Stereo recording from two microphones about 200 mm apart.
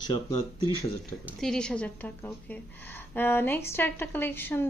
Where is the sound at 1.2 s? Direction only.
Centre (ahead or behind).